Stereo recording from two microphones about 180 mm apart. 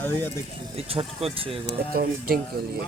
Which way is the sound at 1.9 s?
55° right (ahead or behind).